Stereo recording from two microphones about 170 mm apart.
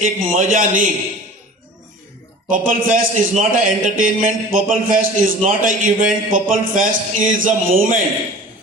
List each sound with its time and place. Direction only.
0.0 s a man's voice: 50° right (ahead or behind)
2.5 s a man's voice: 50° right (ahead or behind)